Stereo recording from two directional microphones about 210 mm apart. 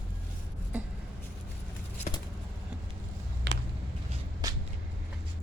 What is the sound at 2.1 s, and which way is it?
Vehicle, 35° left (ahead or behind).